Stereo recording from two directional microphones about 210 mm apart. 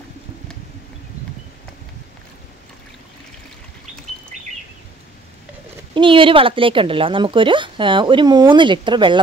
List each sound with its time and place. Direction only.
5.9 s speech: 25° right (ahead or behind)